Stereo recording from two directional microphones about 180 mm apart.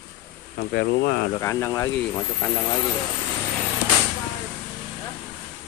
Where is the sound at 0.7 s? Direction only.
70° left (ahead or behind).